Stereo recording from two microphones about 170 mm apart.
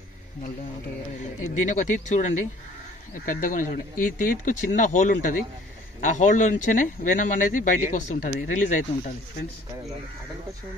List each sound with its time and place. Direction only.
1.6 s speech: 50° left (ahead or behind)